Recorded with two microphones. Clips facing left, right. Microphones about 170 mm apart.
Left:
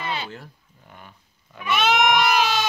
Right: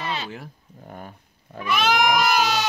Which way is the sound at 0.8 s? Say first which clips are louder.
Right 8 dB; 45° right (ahead or behind).